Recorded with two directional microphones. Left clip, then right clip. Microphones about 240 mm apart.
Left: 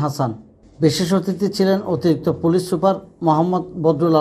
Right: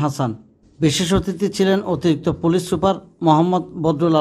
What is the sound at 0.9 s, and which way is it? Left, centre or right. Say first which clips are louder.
A man's voice: even; centre.